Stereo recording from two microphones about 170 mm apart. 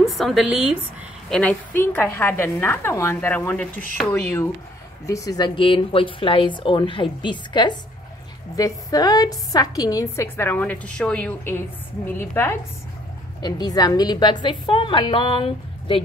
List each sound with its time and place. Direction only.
0.1 s a woman's voice: centre (ahead or behind)
5.0 s a woman's voice: 20° left (ahead or behind)
13.4 s speech: 25° left (ahead or behind)